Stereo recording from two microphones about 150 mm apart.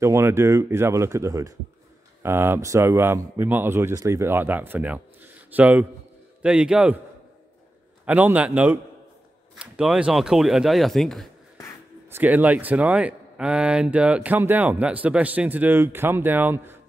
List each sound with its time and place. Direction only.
0.0 s speech: 20° right (ahead or behind)
8.0 s speech: 10° right (ahead or behind)
12.1 s speech: 10° right (ahead or behind)